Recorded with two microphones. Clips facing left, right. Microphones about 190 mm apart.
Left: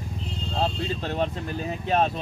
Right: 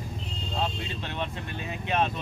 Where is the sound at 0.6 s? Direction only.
40° left (ahead or behind).